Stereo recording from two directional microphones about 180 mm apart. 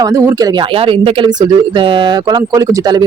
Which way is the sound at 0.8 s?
30° right (ahead or behind).